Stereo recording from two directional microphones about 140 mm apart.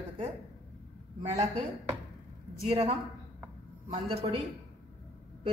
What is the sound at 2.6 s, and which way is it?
Speech, 45° right (ahead or behind).